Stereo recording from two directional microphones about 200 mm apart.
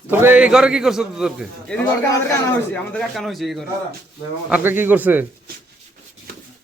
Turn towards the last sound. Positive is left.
turn(degrees=-10)  # may be behind; listen again after turning